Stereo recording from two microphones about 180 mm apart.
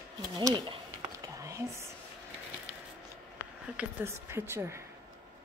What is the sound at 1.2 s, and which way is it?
Whispering, 20° right (ahead or behind).